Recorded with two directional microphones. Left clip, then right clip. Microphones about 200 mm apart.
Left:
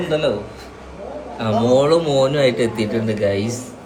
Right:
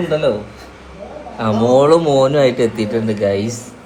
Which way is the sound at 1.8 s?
15° right (ahead or behind).